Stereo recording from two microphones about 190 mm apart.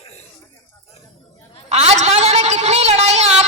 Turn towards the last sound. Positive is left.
turn(degrees=-35)  # may be behind; listen again after turning